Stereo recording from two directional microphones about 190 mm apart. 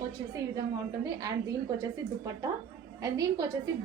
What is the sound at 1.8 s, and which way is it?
A woman's voice, 20° right (ahead or behind).